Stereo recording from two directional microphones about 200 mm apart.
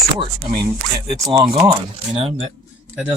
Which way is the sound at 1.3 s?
20° right (ahead or behind).